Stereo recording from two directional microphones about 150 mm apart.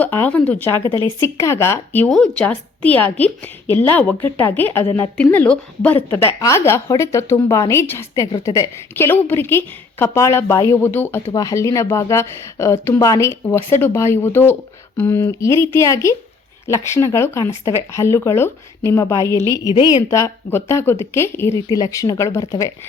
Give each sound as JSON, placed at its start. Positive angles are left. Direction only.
{"t": 0.0, "sound": "speech", "side_deg": 10}
{"t": 0.9, "sound": "a woman's voice", "side_deg": -30}
{"t": 1.2, "sound": "a woman's voice", "side_deg": 20}
{"t": 2.0, "sound": "a woman's voice", "side_deg": 5}
{"t": 19.3, "sound": "a woman's voice", "side_deg": -25}
{"t": 19.7, "sound": "speech", "side_deg": 25}